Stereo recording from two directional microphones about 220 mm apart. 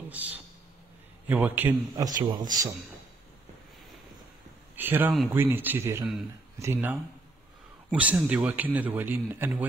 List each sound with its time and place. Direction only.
0.1 s a man's voice: 10° right (ahead or behind)
2.1 s a man's voice: 35° right (ahead or behind)
4.7 s a man's voice: 10° right (ahead or behind)